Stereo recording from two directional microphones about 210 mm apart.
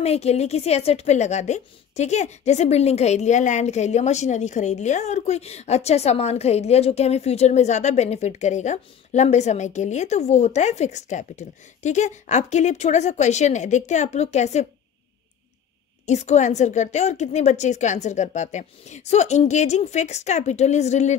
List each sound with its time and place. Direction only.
0.0 s a woman's voice: 30° left (ahead or behind)
16.1 s a woman's voice: 35° left (ahead or behind)